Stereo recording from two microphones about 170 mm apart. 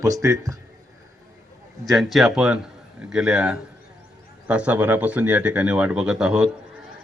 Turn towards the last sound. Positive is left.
turn(degrees=-5)  # may be behind; listen again after turning